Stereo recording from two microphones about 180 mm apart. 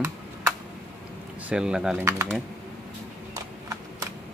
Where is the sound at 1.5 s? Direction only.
5° right (ahead or behind).